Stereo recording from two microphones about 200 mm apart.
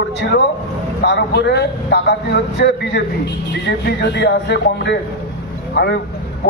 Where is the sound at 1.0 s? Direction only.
60° left (ahead or behind).